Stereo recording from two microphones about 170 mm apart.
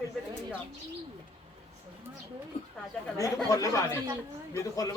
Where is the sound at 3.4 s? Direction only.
20° left (ahead or behind).